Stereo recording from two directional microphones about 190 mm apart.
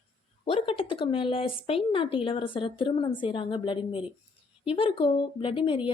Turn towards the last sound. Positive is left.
turn(degrees=25)  # may be behind; listen again after turning